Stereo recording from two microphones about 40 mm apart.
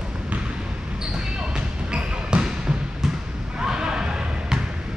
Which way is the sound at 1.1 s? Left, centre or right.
Right.